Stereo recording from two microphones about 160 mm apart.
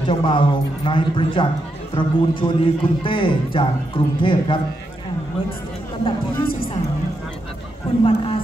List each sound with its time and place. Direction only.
0.0 s a man's voice: 30° left (ahead or behind)
8.0 s a man's voice: 35° left (ahead or behind)